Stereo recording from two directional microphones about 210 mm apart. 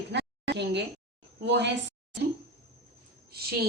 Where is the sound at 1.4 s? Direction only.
55° right (ahead or behind).